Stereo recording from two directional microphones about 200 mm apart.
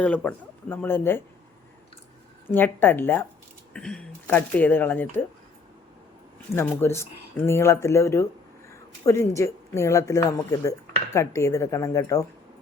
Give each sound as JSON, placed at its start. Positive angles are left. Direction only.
{"t": 0.0, "sound": "speech", "side_deg": 5}
{"t": 2.5, "sound": "speech", "side_deg": 10}
{"t": 6.5, "sound": "speech", "side_deg": 15}
{"t": 8.7, "sound": "a sound", "side_deg": 15}
{"t": 9.3, "sound": "speech", "side_deg": 15}